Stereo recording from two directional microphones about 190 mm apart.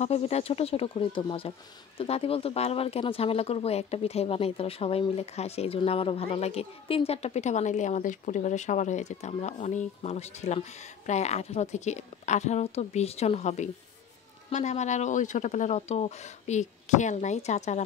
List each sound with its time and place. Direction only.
0.0 s speech: 35° left (ahead or behind)